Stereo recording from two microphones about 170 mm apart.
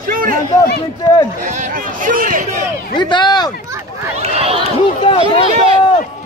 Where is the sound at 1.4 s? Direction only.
50° right (ahead or behind).